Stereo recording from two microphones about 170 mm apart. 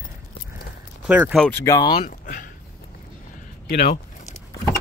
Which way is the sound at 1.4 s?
10° left (ahead or behind).